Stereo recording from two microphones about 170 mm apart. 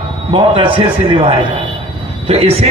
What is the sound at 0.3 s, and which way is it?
A man's voice, 30° right (ahead or behind).